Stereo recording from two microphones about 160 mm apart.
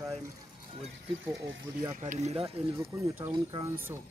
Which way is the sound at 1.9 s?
45° right (ahead or behind).